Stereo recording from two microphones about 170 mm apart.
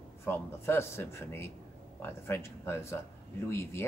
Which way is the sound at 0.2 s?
15° left (ahead or behind).